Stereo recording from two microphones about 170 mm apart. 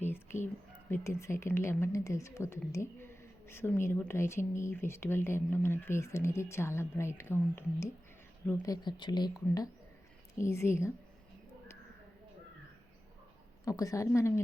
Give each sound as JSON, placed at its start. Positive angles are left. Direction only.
{"t": 0.0, "sound": "whispering", "side_deg": 10}
{"t": 0.9, "sound": "speech", "side_deg": 15}
{"t": 13.7, "sound": "speech", "side_deg": 20}